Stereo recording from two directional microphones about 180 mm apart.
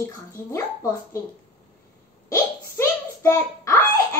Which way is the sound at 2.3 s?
15° left (ahead or behind).